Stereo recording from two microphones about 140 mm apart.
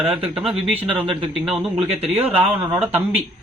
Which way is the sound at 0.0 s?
10° right (ahead or behind).